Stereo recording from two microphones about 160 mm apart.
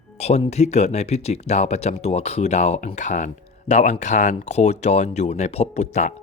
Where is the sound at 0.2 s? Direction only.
40° left (ahead or behind).